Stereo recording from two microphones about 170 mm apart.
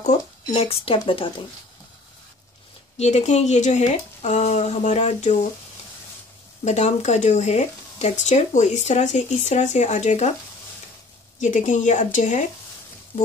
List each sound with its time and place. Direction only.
0.0 s speech: 40° left (ahead or behind)
3.0 s speech: 40° left (ahead or behind)
6.6 s speech: 45° left (ahead or behind)
11.3 s speech: 50° left (ahead or behind)